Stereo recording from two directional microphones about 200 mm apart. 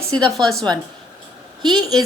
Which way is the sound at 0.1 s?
5° left (ahead or behind).